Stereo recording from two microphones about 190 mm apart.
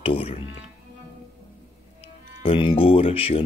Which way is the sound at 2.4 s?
30° left (ahead or behind).